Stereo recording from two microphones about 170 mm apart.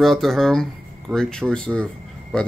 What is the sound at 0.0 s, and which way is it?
Speech, centre (ahead or behind).